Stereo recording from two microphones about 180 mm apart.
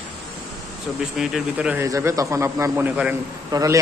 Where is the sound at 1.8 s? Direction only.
15° right (ahead or behind).